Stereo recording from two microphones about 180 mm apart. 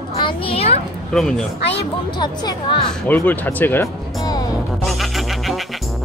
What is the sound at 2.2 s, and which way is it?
Speech, 25° left (ahead or behind).